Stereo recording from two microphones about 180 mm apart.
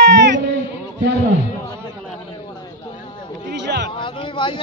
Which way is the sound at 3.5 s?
70° right (ahead or behind).